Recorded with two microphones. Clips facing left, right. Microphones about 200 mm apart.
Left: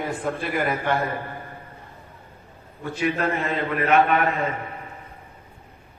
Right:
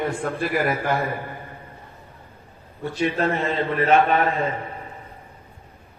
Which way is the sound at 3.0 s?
25° right (ahead or behind).